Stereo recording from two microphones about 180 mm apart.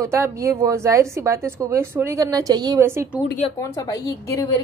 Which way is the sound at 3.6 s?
20° left (ahead or behind).